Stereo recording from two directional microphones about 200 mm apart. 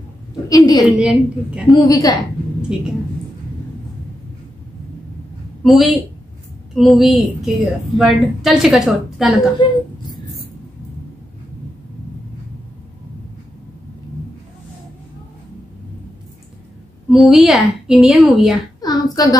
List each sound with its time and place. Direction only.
0.5 s a woman's voice: 20° left (ahead or behind)
0.9 s a woman's voice: 5° right (ahead or behind)
1.9 s a woman's voice: 20° left (ahead or behind)
5.6 s a woman's voice: centre (ahead or behind)
9.6 s a woman's voice: 25° left (ahead or behind)
17.1 s a woman's voice: centre (ahead or behind)
18.8 s a sound: 20° left (ahead or behind)